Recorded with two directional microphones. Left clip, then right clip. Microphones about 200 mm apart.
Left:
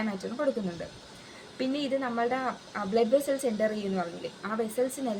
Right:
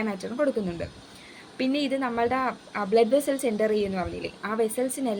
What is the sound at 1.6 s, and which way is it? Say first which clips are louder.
Speech: right 3 dB; 45° right (ahead or behind).